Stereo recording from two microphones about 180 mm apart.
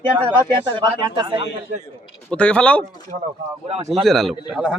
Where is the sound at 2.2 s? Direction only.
5° left (ahead or behind).